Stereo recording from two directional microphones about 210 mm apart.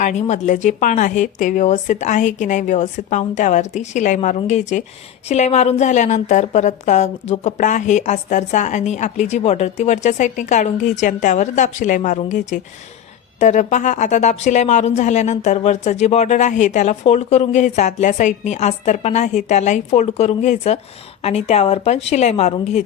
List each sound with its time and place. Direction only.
0.0 s speech: 35° left (ahead or behind)